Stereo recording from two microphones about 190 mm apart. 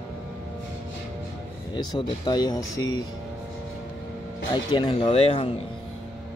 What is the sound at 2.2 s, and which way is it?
Speech, 25° left (ahead or behind).